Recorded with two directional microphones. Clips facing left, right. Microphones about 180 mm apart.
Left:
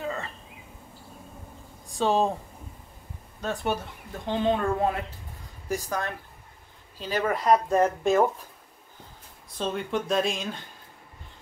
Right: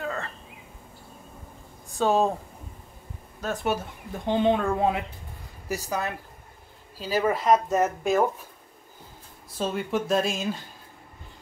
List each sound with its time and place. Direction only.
0.0 s bird: centre (ahead or behind)
2.0 s speech: centre (ahead or behind)
3.3 s speech: 5° right (ahead or behind)
4.3 s speech: 15° right (ahead or behind)
9.6 s speech: 5° right (ahead or behind)